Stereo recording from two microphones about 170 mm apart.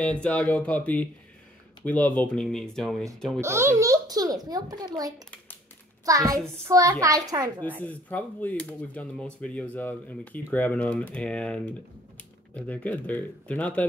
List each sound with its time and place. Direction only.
0.0 s speech: 10° left (ahead or behind)
3.3 s a child's voice: 15° right (ahead or behind)
7.8 s speech: 10° left (ahead or behind)